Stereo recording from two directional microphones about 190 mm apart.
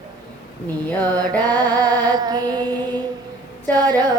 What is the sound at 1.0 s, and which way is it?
Music, 20° right (ahead or behind).